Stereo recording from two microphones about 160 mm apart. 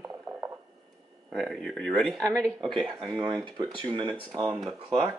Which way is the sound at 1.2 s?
Centre (ahead or behind).